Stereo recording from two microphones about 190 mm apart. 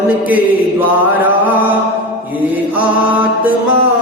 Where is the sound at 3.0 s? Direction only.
5° right (ahead or behind).